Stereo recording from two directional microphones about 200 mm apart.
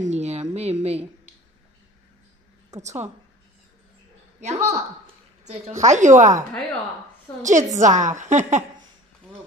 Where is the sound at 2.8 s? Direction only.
35° right (ahead or behind).